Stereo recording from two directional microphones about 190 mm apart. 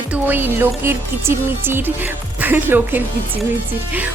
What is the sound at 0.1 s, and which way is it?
Speech, 10° right (ahead or behind).